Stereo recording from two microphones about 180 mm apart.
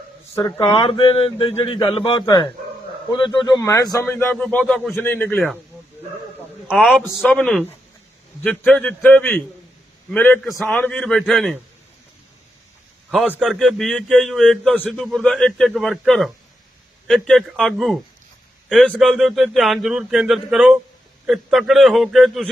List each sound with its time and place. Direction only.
0.3 s a man's voice: 15° left (ahead or behind)
0.6 s a sound: 30° left (ahead or behind)
1.6 s a man's voice: 30° left (ahead or behind); by 4.9 s centre (ahead or behind)
4.9 s a man's voice: 10° left (ahead or behind)
6.7 s a man's voice: 5° right (ahead or behind)
13.1 s a man's voice: 5° right (ahead or behind)